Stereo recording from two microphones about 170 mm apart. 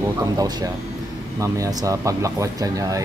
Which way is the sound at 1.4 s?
20° right (ahead or behind).